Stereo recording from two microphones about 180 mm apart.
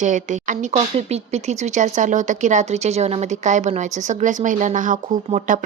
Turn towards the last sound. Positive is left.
turn(degrees=-40)  # may be behind; listen again after turning